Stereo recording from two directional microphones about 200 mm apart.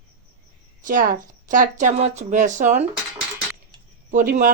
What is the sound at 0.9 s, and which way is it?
Speech, 40° right (ahead or behind).